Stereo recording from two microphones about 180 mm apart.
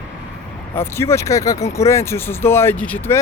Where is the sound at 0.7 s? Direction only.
15° left (ahead or behind).